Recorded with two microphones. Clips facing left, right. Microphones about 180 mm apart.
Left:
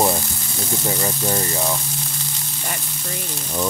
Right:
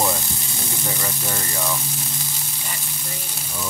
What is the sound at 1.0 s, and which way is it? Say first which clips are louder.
Speech: left 6 dB; 25° left (ahead or behind).